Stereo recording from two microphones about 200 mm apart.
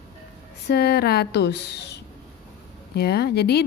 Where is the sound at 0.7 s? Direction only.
50° left (ahead or behind).